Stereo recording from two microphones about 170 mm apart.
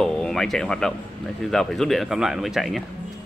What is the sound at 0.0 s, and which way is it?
Speech, 5° left (ahead or behind).